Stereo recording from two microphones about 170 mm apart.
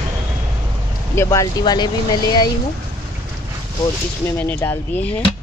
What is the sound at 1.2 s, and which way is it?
Speech, 20° left (ahead or behind).